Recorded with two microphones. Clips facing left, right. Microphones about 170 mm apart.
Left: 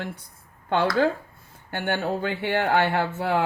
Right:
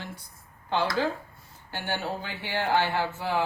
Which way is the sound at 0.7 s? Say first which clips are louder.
Left 5 dB; 55° left (ahead or behind).